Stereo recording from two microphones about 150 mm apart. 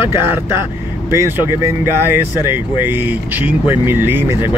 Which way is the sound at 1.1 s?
20° right (ahead or behind).